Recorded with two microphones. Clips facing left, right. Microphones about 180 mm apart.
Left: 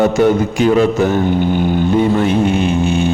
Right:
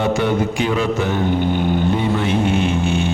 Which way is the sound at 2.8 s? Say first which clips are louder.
Left 4 dB; 40° left (ahead or behind).